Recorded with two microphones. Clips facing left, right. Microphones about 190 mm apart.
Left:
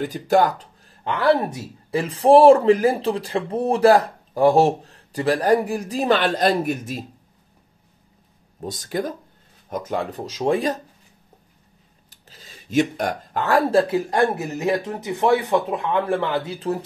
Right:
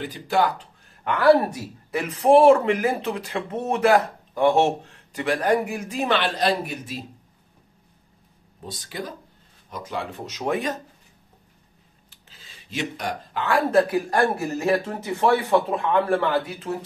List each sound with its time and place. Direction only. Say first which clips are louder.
0.0 s speech: left 4 dB; 45° left (ahead or behind)
1.0 s speech: right 2 dB; 25° left (ahead or behind); by 7.0 s 50° left (ahead or behind)
8.5 s speech: left 7 dB; 45° left (ahead or behind)
10.2 s speech: left 4 dB; 30° left (ahead or behind)
12.1 s speech: left 6 dB; 40° left (ahead or behind); by 16.5 s 20° left (ahead or behind)